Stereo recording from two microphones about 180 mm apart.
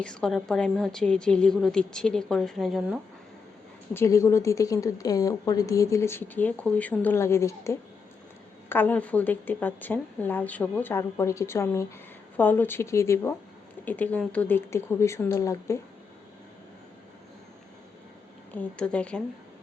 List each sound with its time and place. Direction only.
0.0 s a woman's voice: 5° left (ahead or behind)
3.9 s a woman's voice: 15° left (ahead or behind)
18.5 s a woman's voice: 5° left (ahead or behind)